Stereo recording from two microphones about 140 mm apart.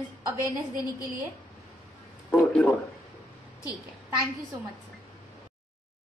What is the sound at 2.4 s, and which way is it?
Speech, 5° left (ahead or behind).